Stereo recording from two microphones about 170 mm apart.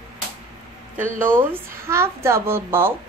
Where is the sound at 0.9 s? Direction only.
50° right (ahead or behind).